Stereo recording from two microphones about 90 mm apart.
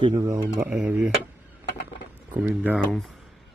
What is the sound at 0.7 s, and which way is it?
Speech, 20° right (ahead or behind).